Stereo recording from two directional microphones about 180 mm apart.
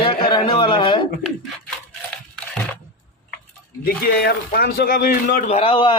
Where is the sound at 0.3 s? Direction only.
25° left (ahead or behind).